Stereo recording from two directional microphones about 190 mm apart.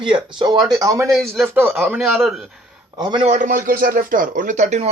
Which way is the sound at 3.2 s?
40° right (ahead or behind).